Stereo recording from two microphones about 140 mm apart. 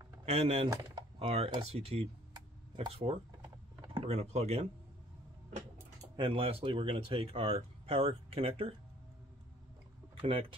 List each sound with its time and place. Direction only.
0.2 s speech: 50° right (ahead or behind)
0.7 s a sound: 30° right (ahead or behind)
1.6 s speech: 45° right (ahead or behind)
2.3 s a sound: 35° right (ahead or behind)
3.9 s speech: 45° right (ahead or behind)
6.1 s speech: 40° right (ahead or behind)